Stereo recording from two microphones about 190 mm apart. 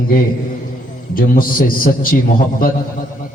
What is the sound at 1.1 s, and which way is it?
A man's voice, 45° left (ahead or behind).